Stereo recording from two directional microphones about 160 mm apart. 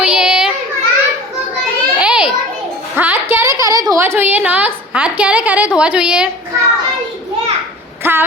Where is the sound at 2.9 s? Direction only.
10° right (ahead or behind).